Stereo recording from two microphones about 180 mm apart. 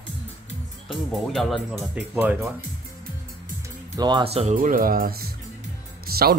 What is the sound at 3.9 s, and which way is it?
Speech, 25° right (ahead or behind).